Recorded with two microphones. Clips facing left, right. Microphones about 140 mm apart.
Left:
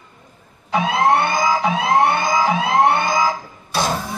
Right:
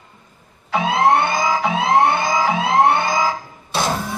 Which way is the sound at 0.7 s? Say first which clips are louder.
Right 1 dB; 25° right (ahead or behind).